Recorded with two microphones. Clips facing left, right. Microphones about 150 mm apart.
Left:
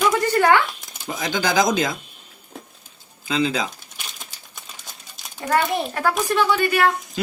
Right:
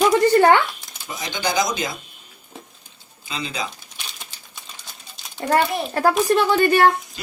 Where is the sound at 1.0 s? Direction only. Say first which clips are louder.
Left 3 dB; 90° left.